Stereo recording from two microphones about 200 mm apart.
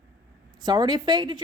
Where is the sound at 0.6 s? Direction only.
20° right (ahead or behind).